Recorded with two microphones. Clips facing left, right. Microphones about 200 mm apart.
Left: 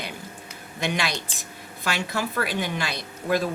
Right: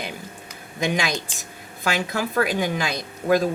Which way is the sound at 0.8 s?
45° right (ahead or behind).